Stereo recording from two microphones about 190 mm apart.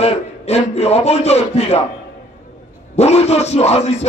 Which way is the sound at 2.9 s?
35° left (ahead or behind).